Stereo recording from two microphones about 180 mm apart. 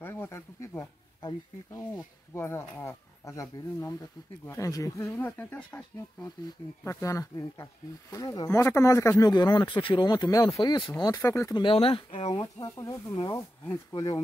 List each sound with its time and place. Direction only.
0.0 s a sound: 15° left (ahead or behind)
6.8 s snake: 15° left (ahead or behind)
8.1 s speech: 20° left (ahead or behind)